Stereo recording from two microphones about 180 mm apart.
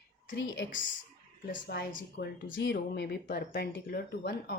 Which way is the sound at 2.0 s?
85° left.